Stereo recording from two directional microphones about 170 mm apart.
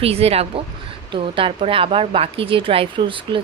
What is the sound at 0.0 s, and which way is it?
A woman's voice, 35° right (ahead or behind).